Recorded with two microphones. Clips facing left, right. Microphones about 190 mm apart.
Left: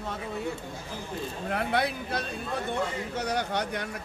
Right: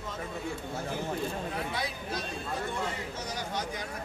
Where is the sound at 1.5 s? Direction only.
65° left (ahead or behind).